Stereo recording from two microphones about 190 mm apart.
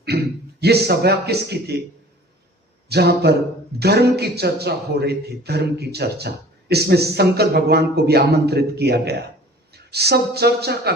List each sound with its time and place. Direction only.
0.6 s a man's voice: 60° right (ahead or behind)
2.9 s a man's voice: 55° right (ahead or behind)